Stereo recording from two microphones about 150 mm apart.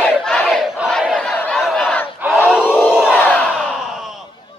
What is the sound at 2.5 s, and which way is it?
Crowd, 5° right (ahead or behind).